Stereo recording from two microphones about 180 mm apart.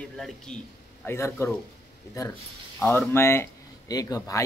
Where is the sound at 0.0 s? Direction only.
5° left (ahead or behind).